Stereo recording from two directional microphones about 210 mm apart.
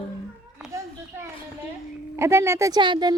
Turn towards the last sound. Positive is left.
turn(degrees=-20)  # may be behind; listen again after turning